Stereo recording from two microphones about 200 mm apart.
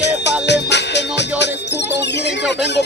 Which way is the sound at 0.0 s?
60° left (ahead or behind).